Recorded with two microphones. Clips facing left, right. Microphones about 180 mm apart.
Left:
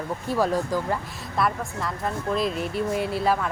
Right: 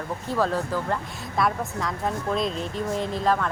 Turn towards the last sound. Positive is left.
turn(degrees=10)  # may be behind; listen again after turning